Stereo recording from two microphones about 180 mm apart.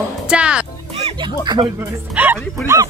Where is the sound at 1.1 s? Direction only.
25° right (ahead or behind).